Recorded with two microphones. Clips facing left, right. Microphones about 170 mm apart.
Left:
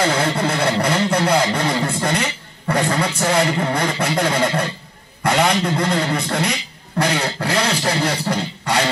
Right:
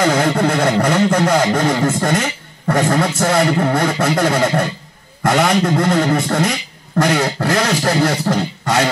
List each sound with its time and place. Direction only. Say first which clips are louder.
0.2 s a man's voice: right 4 dB; 45° right (ahead or behind)